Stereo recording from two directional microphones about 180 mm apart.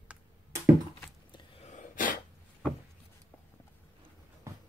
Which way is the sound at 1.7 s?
45° left (ahead or behind).